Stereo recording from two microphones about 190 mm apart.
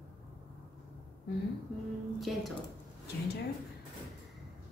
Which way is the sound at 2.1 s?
Centre (ahead or behind).